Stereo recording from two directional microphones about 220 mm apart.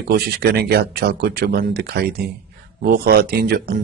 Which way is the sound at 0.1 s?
50° right (ahead or behind).